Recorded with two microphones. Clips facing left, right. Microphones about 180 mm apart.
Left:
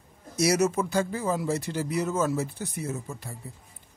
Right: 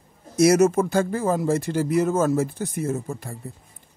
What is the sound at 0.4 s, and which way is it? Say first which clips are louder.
A man's voice: right 7 dB; 50° right (ahead or behind).